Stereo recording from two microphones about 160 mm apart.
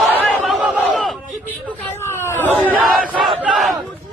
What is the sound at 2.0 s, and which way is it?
Chatter, 15° left (ahead or behind).